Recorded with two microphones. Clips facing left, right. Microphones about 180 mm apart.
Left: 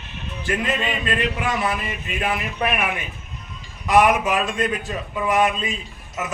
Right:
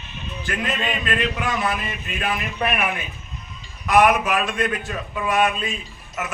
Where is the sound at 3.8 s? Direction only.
20° left (ahead or behind).